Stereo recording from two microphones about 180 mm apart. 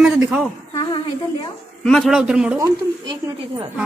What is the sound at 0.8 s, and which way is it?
Speech, 25° left (ahead or behind).